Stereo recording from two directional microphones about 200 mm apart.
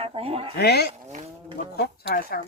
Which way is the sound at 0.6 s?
55° left (ahead or behind).